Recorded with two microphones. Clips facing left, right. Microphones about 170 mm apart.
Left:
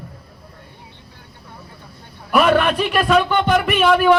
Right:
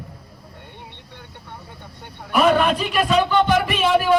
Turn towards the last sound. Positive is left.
turn(degrees=70)  # may be behind; listen again after turning